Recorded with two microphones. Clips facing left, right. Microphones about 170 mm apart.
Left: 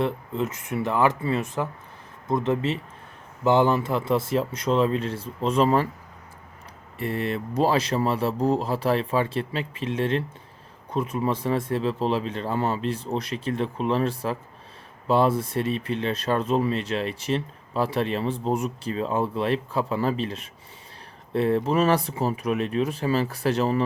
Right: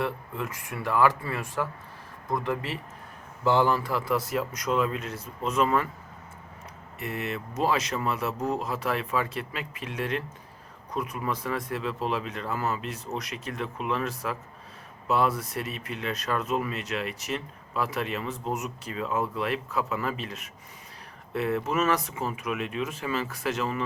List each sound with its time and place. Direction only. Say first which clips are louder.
0.0 s speech: left 5 dB; 20° left (ahead or behind)
7.0 s speech: left 6 dB; 30° left (ahead or behind)